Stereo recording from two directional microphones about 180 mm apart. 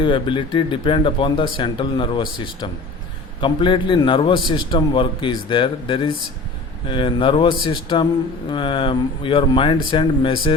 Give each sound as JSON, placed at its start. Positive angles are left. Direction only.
{"t": 0.0, "sound": "a man's voice", "side_deg": 25}